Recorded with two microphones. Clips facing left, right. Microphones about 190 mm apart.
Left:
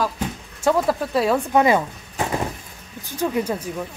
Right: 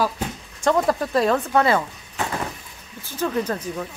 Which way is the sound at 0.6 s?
5° left (ahead or behind).